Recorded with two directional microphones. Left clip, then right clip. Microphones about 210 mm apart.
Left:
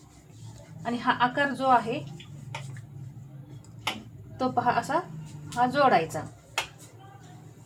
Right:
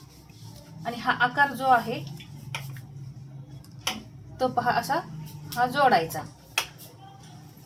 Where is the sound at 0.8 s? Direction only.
25° left (ahead or behind).